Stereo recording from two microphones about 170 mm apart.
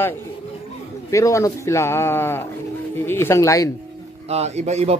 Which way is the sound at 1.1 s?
20° left (ahead or behind).